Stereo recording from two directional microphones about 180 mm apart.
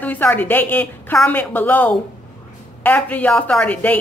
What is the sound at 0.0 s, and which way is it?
A woman's voice, 10° left (ahead or behind).